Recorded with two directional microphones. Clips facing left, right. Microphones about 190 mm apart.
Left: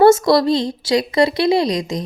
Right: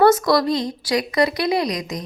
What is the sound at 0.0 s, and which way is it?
A woman's voice, 25° left (ahead or behind).